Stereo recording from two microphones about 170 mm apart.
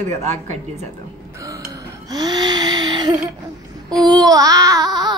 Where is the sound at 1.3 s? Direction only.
20° right (ahead or behind).